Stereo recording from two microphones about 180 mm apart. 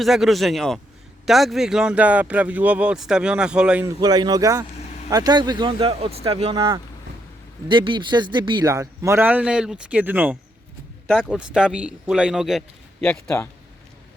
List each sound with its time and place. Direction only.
0.0 s speech: centre (ahead or behind)
3.8 s speech: 20° right (ahead or behind)
7.7 s a man's voice: 25° right (ahead or behind); by 13.3 s 5° left (ahead or behind)